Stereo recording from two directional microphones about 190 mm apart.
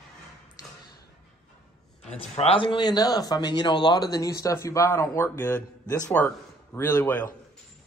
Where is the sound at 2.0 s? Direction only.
30° left (ahead or behind); by 7.3 s 10° left (ahead or behind).